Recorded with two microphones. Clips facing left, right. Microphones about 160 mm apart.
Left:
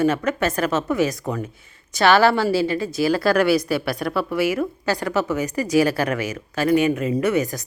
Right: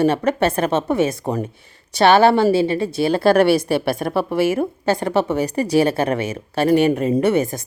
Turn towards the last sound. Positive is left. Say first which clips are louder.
# right 3 dB
turn(degrees=-25)  # may be behind; listen again after turning